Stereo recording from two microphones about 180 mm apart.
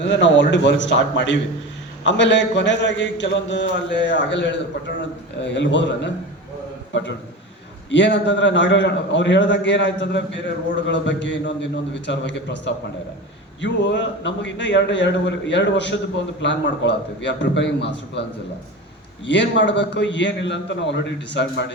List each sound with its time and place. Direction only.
0.0 s a man's voice: 85° left
7.9 s a man's voice: 80° left
19.2 s a man's voice: 80° left